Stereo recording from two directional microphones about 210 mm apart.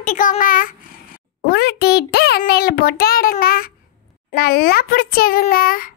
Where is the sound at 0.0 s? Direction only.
40° left (ahead or behind).